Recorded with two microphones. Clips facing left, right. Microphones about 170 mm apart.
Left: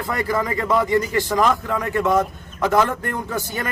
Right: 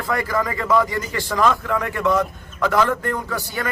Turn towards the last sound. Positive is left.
turn(degrees=20)  # may be behind; listen again after turning